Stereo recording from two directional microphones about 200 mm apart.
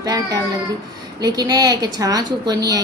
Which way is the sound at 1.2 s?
20° right (ahead or behind).